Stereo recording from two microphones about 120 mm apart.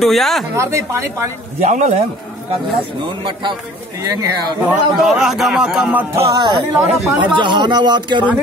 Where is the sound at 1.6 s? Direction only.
75° right (ahead or behind).